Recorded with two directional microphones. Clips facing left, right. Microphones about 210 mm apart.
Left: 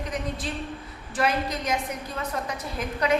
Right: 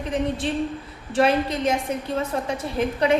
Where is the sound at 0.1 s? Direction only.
30° right (ahead or behind).